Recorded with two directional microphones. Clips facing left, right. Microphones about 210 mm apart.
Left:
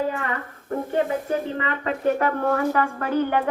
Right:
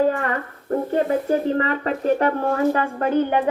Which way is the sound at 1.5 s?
40° right (ahead or behind).